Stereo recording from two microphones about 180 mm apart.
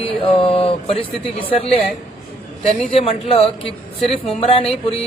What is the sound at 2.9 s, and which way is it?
Speech, 35° left (ahead or behind).